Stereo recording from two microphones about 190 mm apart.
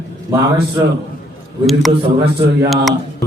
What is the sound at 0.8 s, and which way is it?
Speech, 20° right (ahead or behind).